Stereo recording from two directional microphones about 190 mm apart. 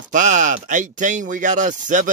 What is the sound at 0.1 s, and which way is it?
Speech, 40° right (ahead or behind).